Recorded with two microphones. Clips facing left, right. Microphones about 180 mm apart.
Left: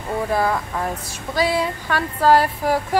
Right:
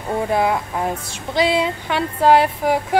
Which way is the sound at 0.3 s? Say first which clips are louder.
Right 2 dB; 20° right (ahead or behind).